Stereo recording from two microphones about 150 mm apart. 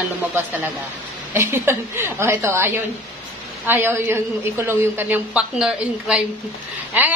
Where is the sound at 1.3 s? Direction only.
15° right (ahead or behind).